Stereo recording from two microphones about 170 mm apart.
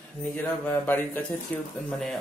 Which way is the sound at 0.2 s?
10° left (ahead or behind).